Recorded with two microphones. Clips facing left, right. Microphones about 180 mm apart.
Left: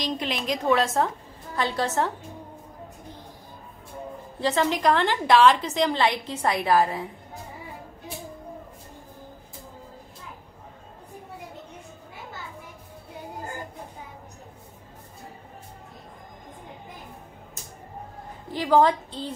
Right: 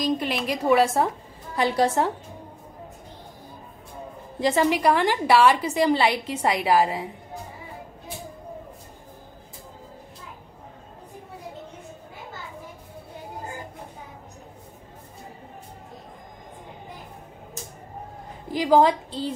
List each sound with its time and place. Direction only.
0.0 s a woman's voice: 5° right (ahead or behind)
4.4 s a woman's voice: 10° right (ahead or behind)
18.5 s a woman's voice: 10° right (ahead or behind)